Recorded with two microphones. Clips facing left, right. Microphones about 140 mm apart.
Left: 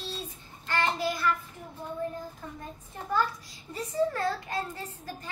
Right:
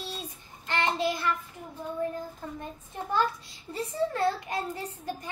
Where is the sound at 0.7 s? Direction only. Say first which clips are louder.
Right 1 dB; 20° right (ahead or behind).